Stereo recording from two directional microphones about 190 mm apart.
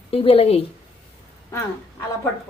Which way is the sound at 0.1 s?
30° left (ahead or behind).